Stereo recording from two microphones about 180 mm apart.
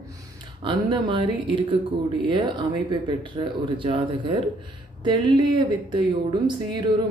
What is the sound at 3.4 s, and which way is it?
Speech, 30° right (ahead or behind).